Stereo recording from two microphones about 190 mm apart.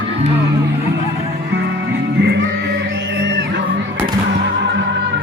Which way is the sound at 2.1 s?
60° right (ahead or behind).